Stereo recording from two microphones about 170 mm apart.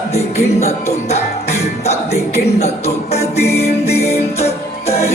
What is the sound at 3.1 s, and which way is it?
Music, 40° left (ahead or behind).